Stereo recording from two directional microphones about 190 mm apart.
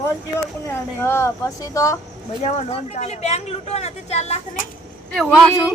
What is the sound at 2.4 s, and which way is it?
Speech, 35° left (ahead or behind).